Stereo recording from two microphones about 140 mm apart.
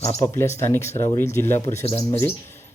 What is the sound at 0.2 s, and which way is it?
Speech, 20° left (ahead or behind).